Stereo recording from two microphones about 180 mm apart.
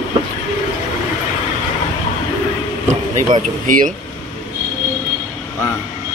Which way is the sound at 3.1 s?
45° right (ahead or behind).